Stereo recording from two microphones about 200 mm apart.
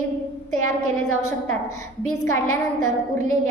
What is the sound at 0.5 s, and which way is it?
A woman's voice, 90° left.